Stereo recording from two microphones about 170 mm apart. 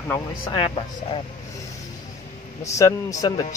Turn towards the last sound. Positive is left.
turn(degrees=20)  # may be behind; listen again after turning